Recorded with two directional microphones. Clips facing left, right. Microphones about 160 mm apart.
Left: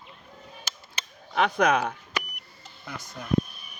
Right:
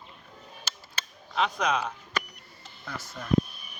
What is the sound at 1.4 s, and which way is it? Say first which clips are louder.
Speech: left 5 dB; 60° left (ahead or behind).